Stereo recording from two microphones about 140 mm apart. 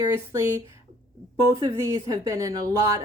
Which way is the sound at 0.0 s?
20° right (ahead or behind).